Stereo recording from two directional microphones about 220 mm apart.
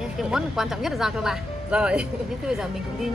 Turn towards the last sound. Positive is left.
turn(degrees=0)  # may be behind; listen again after turning